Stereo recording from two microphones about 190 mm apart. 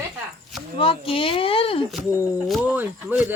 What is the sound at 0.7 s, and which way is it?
Speech, 30° left (ahead or behind).